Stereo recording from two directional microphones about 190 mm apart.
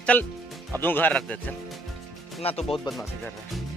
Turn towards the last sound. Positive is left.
turn(degrees=0)  # may be behind; listen again after turning